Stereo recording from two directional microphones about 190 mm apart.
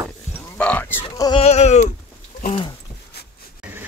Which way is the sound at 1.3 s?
35° left (ahead or behind).